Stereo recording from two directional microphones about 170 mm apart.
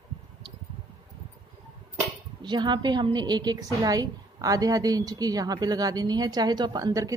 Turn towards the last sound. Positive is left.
turn(degrees=-20)  # may be behind; listen again after turning